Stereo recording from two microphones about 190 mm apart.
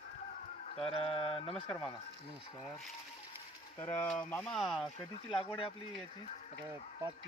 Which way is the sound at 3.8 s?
10° left (ahead or behind).